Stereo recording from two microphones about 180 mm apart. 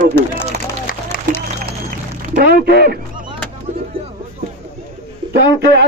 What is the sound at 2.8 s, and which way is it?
Honk, 60° right (ahead or behind).